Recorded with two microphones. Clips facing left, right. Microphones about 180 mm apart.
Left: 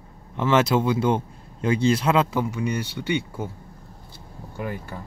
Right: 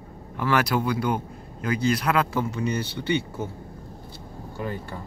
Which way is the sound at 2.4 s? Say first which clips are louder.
Left 1 dB; 10° left (ahead or behind).